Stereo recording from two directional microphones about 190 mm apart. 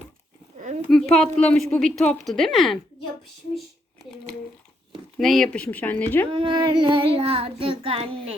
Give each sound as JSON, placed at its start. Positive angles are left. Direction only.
{"t": 0.6, "sound": "a sound", "side_deg": -35}
{"t": 1.1, "sound": "speech", "side_deg": 5}
{"t": 5.1, "sound": "speech", "side_deg": 0}
{"t": 6.3, "sound": "child singing", "side_deg": -25}